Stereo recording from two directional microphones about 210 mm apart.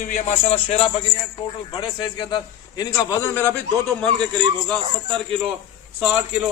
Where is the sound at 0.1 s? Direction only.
35° left (ahead or behind); by 3.5 s 15° left (ahead or behind).